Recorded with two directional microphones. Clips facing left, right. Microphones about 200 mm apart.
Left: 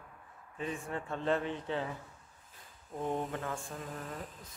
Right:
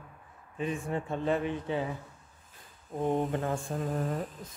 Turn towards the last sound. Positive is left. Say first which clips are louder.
# right 10 dB
turn(degrees=-40)  # may be behind; listen again after turning